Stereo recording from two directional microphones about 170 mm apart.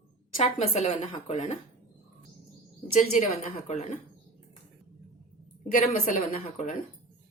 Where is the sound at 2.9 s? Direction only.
40° left (ahead or behind).